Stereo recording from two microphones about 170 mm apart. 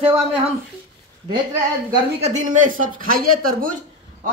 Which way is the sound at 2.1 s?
40° right (ahead or behind).